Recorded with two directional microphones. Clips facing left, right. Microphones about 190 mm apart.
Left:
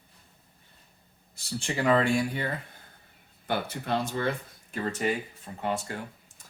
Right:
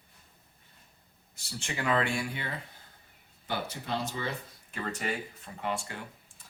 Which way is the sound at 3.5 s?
55° left (ahead or behind).